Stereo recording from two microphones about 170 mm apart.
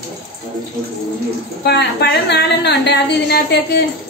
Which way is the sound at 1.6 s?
75° left (ahead or behind).